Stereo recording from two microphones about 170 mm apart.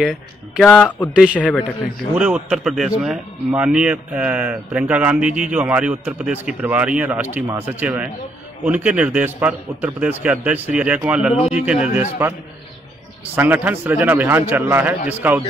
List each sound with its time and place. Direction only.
0.0 s a man's voice: centre (ahead or behind)
0.7 s a man's voice: 10° left (ahead or behind)
1.1 s a man's voice: 5° right (ahead or behind)
13.4 s speech: 10° right (ahead or behind)